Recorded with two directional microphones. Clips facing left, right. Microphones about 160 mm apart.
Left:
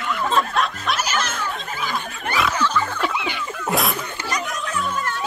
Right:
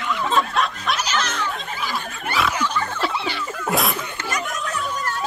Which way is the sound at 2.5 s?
15° right (ahead or behind).